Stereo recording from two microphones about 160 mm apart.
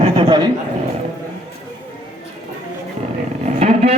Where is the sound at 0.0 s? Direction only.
30° right (ahead or behind).